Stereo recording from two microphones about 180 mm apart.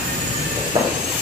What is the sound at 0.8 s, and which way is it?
Train, 20° right (ahead or behind).